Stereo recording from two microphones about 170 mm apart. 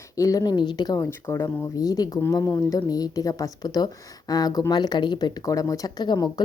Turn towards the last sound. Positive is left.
turn(degrees=25)  # may be behind; listen again after turning